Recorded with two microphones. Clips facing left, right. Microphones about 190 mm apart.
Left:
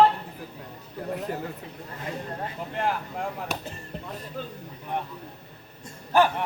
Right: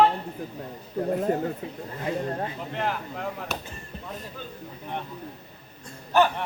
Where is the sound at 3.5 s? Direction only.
10° left (ahead or behind).